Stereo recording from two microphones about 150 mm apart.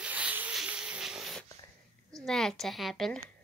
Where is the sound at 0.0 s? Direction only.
10° right (ahead or behind).